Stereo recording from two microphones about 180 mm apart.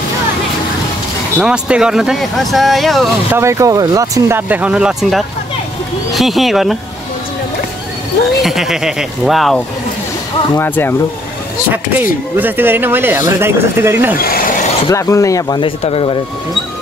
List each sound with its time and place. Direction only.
1.4 s speech: 5° right (ahead or behind)
3.3 s speech: 15° right (ahead or behind); by 6.8 s centre (ahead or behind)
8.4 s speech: centre (ahead or behind)
10.6 s speech: 10° left (ahead or behind)
12.4 s speech: 10° right (ahead or behind)
14.2 s a sound: 55° left (ahead or behind)
14.9 s speech: 15° left (ahead or behind)
15.8 s speech: 30° left (ahead or behind)